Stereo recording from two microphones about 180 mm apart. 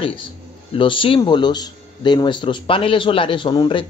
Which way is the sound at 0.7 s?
30° left (ahead or behind).